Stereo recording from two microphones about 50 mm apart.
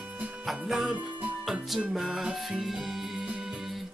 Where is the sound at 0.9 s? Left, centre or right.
Right.